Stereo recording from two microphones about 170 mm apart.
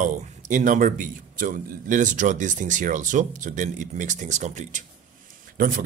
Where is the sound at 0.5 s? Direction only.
50° right (ahead or behind).